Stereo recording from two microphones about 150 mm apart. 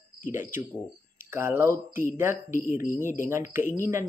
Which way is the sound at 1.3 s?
15° right (ahead or behind).